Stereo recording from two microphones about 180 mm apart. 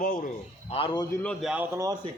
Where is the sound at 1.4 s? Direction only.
10° right (ahead or behind).